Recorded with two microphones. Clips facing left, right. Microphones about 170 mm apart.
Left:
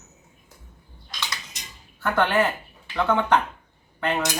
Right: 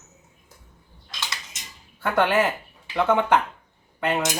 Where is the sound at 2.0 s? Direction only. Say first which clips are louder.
Right 1 dB; 15° right (ahead or behind).